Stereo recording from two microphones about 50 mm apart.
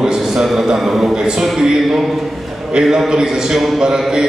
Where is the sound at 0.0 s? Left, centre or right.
Centre.